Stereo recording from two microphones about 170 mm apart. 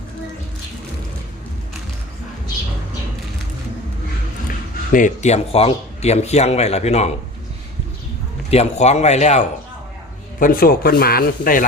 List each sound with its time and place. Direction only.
4.4 s a man's voice: 50° left (ahead or behind)
8.4 s speech: 40° left (ahead or behind)
10.4 s speech: 60° left (ahead or behind)